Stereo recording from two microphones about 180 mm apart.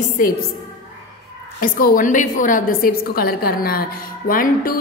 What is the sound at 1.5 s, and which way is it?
A woman's voice, 50° left (ahead or behind).